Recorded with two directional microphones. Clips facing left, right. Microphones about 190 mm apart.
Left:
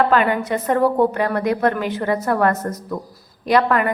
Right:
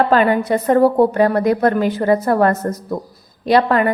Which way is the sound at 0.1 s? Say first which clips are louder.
Right 3 dB; 35° right (ahead or behind).